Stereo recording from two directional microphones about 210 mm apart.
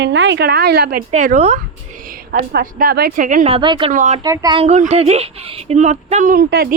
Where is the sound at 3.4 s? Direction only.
25° right (ahead or behind).